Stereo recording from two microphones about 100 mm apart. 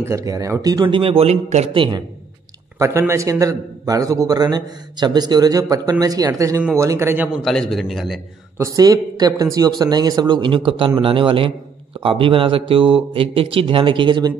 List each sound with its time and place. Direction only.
0.0 s a man's voice: 30° right (ahead or behind)
0.8 s speech: 60° right (ahead or behind); by 1.9 s 75° right (ahead or behind)
2.8 s a man's voice: 25° right (ahead or behind)
7.4 s a man's voice: 5° left (ahead or behind)
8.5 s a man's voice: 35° right (ahead or behind); by 14.3 s 55° right (ahead or behind)